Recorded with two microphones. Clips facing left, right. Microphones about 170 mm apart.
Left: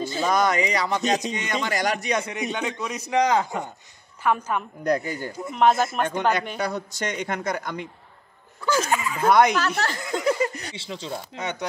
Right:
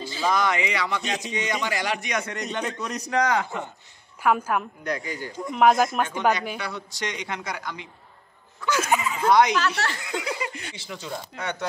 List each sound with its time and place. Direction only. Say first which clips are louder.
0.0 s speech: left 2 dB; 45° left (ahead or behind)
2.2 s a man's voice: left 2 dB; 5° left (ahead or behind)
3.1 s a man's voice: left 3 dB; 20° left (ahead or behind)
4.2 s a woman's voice: right 1 dB; 10° right (ahead or behind)
4.8 s speech: left 6 dB; 45° left (ahead or behind)
5.3 s a man's voice: right 1 dB; 5° left (ahead or behind)
6.6 s speech: left 5 dB; 45° left (ahead or behind)
8.8 s a sound: right 1 dB; 20° right (ahead or behind)
9.3 s speech: left 1 dB; 50° left (ahead or behind); by 11.5 s 25° left (ahead or behind)